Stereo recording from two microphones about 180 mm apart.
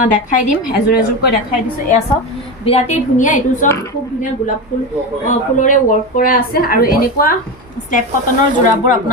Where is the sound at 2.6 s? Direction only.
35° left (ahead or behind).